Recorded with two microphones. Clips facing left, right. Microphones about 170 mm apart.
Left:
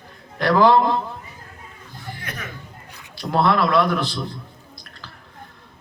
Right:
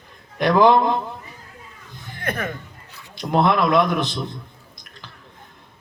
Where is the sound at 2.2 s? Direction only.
55° right (ahead or behind).